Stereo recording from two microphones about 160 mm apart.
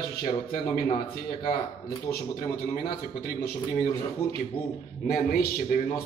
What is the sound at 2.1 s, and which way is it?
A man's voice, 65° left (ahead or behind).